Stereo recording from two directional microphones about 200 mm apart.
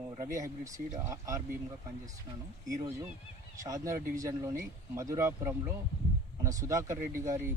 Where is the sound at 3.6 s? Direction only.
15° right (ahead or behind).